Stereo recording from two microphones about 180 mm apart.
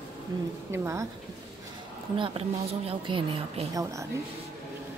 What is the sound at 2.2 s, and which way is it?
A woman's voice, 30° right (ahead or behind).